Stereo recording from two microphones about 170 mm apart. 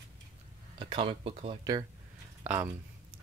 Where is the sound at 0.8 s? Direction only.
30° right (ahead or behind).